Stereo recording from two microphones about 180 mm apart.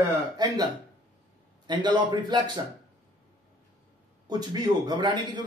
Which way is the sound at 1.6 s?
25° right (ahead or behind).